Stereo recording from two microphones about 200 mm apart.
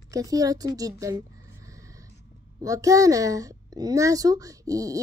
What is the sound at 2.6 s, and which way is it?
Child singing, 15° right (ahead or behind).